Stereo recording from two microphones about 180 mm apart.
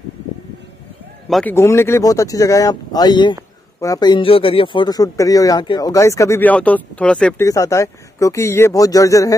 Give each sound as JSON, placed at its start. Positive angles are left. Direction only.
{"t": 1.3, "sound": "speech", "side_deg": 10}
{"t": 7.4, "sound": "speech", "side_deg": 15}